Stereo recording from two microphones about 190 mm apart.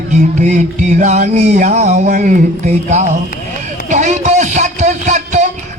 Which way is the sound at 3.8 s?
40° right (ahead or behind).